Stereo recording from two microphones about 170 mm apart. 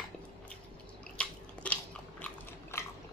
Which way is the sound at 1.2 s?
5° left (ahead or behind).